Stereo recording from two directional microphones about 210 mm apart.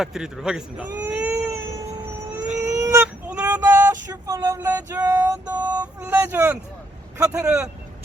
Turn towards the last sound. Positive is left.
turn(degrees=-5)  # may be behind; listen again after turning